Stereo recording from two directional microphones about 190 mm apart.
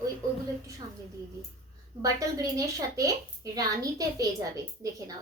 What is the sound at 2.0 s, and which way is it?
A woman's voice, 20° right (ahead or behind).